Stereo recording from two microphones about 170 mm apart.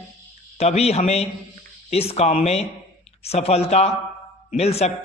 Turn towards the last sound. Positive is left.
turn(degrees=40)  # may be behind; listen again after turning